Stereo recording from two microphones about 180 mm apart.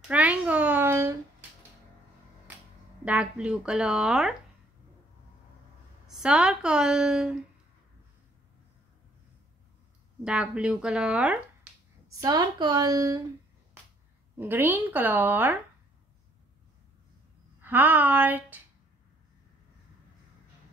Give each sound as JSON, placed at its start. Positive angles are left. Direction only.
{"t": 0.1, "sound": "a sound", "side_deg": -5}
{"t": 3.1, "sound": "a woman's voice", "side_deg": -5}
{"t": 6.0, "sound": "a woman's voice", "side_deg": -5}
{"t": 10.2, "sound": "a woman's voice", "side_deg": -5}
{"t": 12.1, "sound": "a woman's voice", "side_deg": -20}
{"t": 14.4, "sound": "speech", "side_deg": -10}
{"t": 17.6, "sound": "speech", "side_deg": -10}